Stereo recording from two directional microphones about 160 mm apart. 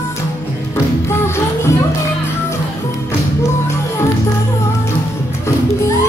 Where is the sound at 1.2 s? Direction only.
15° left (ahead or behind).